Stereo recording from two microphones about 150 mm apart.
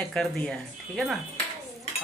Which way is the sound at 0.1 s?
5° left (ahead or behind).